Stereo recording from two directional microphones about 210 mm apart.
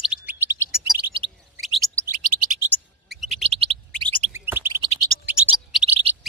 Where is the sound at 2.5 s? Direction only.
5° right (ahead or behind).